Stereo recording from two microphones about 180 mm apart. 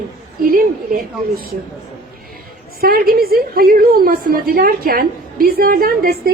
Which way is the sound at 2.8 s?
55° right (ahead or behind).